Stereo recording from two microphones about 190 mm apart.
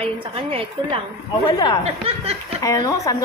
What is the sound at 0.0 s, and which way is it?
A woman's voice, 30° right (ahead or behind).